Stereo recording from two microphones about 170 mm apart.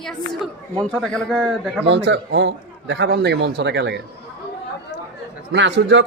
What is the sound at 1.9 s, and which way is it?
A man's voice, 90° right.